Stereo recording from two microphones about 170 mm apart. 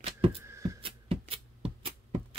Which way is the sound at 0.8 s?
35° right (ahead or behind).